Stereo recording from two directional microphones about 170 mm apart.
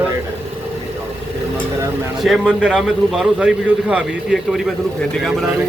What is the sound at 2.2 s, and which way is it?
A man's voice, centre (ahead or behind).